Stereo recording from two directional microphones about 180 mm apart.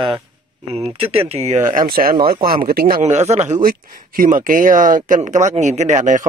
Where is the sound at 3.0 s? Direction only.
35° right (ahead or behind).